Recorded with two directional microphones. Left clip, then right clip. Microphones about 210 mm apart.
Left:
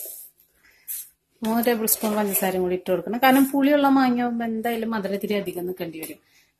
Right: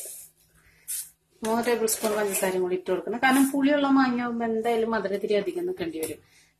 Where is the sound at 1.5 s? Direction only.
35° left (ahead or behind).